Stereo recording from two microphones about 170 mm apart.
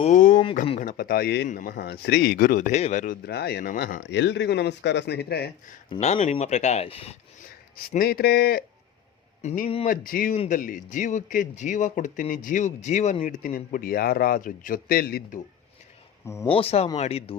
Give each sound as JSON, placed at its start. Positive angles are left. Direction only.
{"t": 0.0, "sound": "speech", "side_deg": 50}
{"t": 1.5, "sound": "speech", "side_deg": 55}
{"t": 3.2, "sound": "speech", "side_deg": 70}
{"t": 6.0, "sound": "speech", "side_deg": 45}
{"t": 7.9, "sound": "speech", "side_deg": 60}
{"t": 9.4, "sound": "speech", "side_deg": 40}
{"t": 9.8, "sound": "speech", "side_deg": 55}
{"t": 13.2, "sound": "speech", "side_deg": 55}
{"t": 16.2, "sound": "speech", "side_deg": 15}
{"t": 16.6, "sound": "speech", "side_deg": 35}